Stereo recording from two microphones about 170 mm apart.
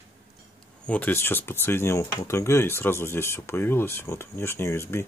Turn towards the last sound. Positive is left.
turn(degrees=15)  # may be behind; listen again after turning